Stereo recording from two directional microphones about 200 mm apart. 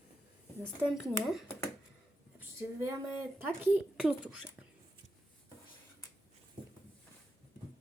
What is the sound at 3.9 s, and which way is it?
Speech, 5° right (ahead or behind).